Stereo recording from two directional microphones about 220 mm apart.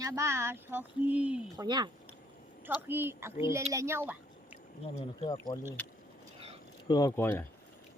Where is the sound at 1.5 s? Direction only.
20° right (ahead or behind).